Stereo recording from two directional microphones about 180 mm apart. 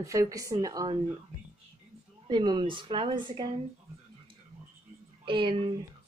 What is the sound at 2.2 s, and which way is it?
Speech, 25° right (ahead or behind).